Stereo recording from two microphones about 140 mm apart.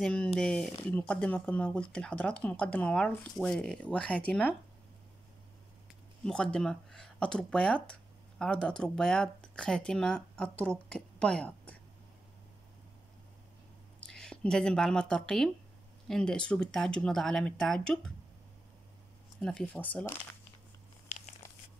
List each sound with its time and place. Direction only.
0.0 s speech: 5° left (ahead or behind)
6.2 s a woman's voice: 5° left (ahead or behind)
14.0 s speech: 5° left (ahead or behind)
19.4 s speech: 5° left (ahead or behind)
21.1 s crumpling: 55° left (ahead or behind)